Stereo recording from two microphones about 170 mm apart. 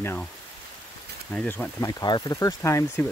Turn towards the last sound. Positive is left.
turn(degrees=15)  # may be behind; listen again after turning